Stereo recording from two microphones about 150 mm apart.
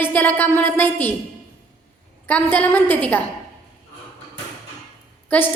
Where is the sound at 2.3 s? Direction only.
10° left (ahead or behind).